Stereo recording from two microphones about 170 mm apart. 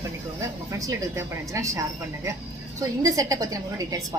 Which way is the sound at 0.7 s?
20° right (ahead or behind).